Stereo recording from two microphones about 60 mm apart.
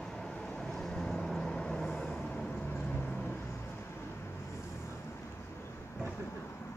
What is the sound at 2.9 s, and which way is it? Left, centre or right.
Vehicle, left.